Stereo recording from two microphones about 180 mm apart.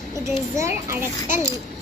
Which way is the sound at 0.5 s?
15° right (ahead or behind).